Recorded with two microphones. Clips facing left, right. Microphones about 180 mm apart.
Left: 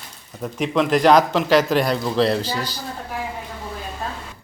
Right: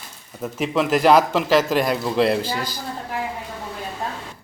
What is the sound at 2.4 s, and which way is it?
Speech, 50° right (ahead or behind).